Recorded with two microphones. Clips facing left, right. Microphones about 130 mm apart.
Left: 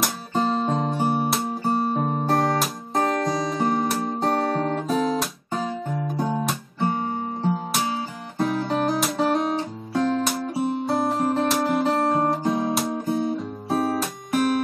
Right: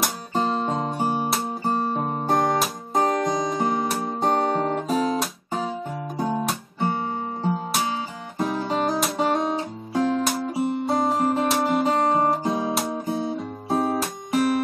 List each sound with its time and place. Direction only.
0.0 s guitar: centre (ahead or behind)
2.0 s music: 25° right (ahead or behind)
3.5 s music: centre (ahead or behind)
4.2 s guitar: 20° right (ahead or behind)
4.7 s guitar: centre (ahead or behind)
9.9 s music: 10° right (ahead or behind)
10.2 s guitar: centre (ahead or behind)
13.2 s music: 20° right (ahead or behind)